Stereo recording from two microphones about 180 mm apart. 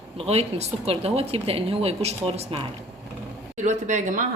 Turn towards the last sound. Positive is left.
turn(degrees=-40)  # may be behind; listen again after turning